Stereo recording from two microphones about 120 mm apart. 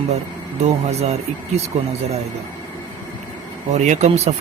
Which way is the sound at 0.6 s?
65° right (ahead or behind).